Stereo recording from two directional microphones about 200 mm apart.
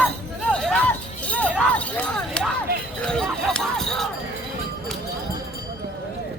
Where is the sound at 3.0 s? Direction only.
5° left (ahead or behind).